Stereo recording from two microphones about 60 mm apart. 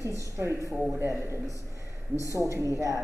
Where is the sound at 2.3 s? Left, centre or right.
Right.